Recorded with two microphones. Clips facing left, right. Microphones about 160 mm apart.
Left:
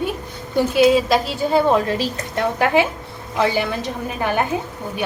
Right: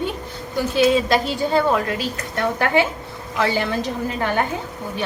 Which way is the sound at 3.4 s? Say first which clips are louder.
Left 1 dB; 10° left (ahead or behind).